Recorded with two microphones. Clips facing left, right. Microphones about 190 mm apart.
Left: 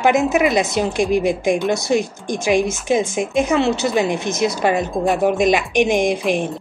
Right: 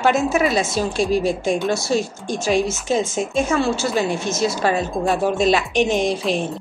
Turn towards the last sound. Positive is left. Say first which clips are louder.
# left 2 dB
turn(degrees=15)  # may be behind; listen again after turning